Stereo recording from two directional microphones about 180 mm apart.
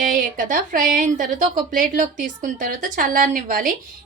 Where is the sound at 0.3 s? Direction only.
45° right (ahead or behind).